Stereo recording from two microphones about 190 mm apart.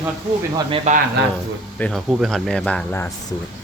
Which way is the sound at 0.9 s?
40° right (ahead or behind).